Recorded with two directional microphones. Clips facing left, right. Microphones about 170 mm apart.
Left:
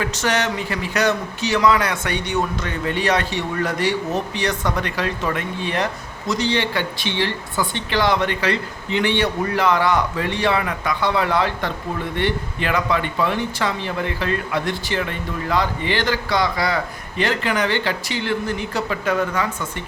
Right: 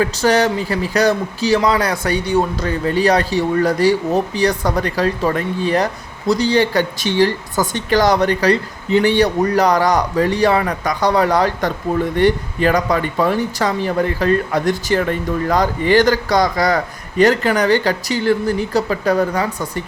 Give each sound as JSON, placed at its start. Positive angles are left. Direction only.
{"t": 0.0, "sound": "a man's voice", "side_deg": -35}